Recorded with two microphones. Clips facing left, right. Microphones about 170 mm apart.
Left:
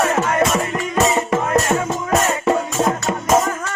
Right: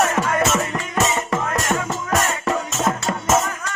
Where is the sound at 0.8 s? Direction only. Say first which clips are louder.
Left 4 dB; 20° left (ahead or behind).